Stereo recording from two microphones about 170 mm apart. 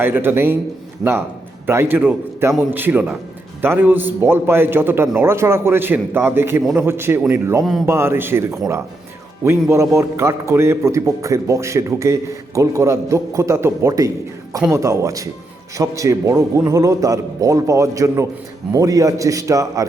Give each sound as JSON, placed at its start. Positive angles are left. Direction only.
{"t": 0.0, "sound": "a man's voice", "side_deg": -10}
{"t": 1.0, "sound": "speech", "side_deg": 0}
{"t": 1.6, "sound": "a man's voice", "side_deg": -15}